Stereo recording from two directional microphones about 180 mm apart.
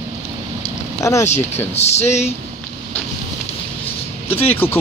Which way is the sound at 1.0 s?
15° left (ahead or behind).